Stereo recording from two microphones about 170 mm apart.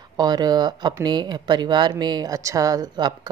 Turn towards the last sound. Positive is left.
turn(degrees=-25)  # may be behind; listen again after turning